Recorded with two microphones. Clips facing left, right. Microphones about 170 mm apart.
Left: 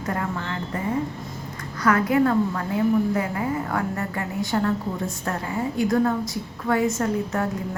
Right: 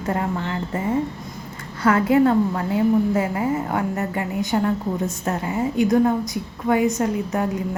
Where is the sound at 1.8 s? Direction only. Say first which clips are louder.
Right 3 dB; 25° right (ahead or behind).